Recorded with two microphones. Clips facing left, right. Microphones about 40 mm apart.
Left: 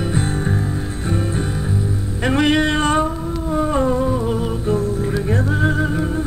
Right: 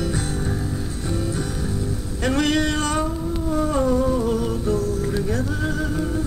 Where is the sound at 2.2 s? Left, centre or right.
Left.